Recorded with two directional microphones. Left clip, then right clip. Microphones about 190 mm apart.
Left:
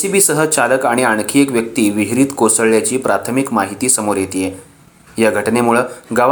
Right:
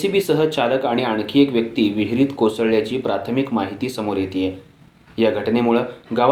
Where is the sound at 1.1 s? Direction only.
90° left.